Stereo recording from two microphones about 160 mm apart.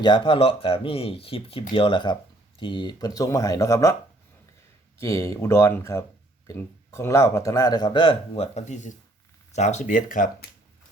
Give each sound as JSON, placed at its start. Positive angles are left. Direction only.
{"t": 0.0, "sound": "speech", "side_deg": 30}
{"t": 4.9, "sound": "speech", "side_deg": 20}
{"t": 8.5, "sound": "speech", "side_deg": 50}